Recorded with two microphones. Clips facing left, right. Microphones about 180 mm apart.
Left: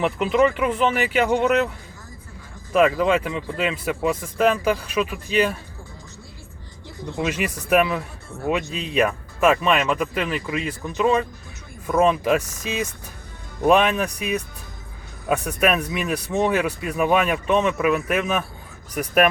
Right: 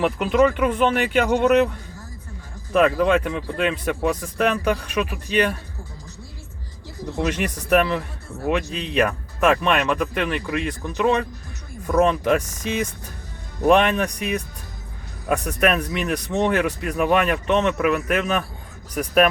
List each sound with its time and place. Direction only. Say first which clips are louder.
0.0 s speech: right 1 dB; centre (ahead or behind)
2.7 s speech: even; 5° left (ahead or behind)
7.0 s speech: right 1 dB; 5° left (ahead or behind)
13.7 s speech: right 1 dB; 5° left (ahead or behind)